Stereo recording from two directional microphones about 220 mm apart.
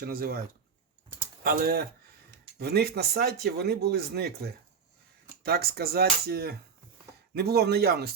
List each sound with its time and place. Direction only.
0.0 s speech: 45° right (ahead or behind)